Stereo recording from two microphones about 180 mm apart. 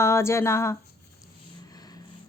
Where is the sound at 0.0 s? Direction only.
15° left (ahead or behind).